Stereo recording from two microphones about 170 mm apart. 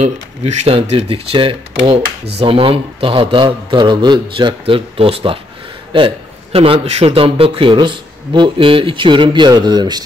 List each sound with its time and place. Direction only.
0.0 s a man's voice: 35° right (ahead or behind)